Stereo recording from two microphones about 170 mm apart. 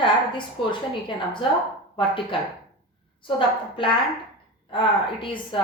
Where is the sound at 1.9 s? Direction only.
30° left (ahead or behind).